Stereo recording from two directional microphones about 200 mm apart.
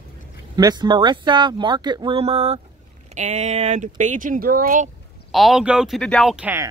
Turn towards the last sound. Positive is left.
turn(degrees=-5)  # may be behind; listen again after turning